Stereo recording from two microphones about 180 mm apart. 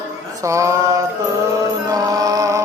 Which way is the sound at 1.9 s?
20° right (ahead or behind).